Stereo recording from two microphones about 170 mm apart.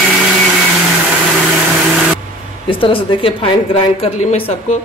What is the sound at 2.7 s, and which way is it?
A woman's voice, 30° left (ahead or behind).